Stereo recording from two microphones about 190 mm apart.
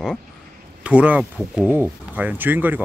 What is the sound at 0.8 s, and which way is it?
Speech, 5° right (ahead or behind).